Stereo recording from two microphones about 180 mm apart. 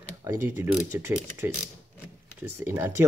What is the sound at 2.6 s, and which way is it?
Speech, 15° right (ahead or behind).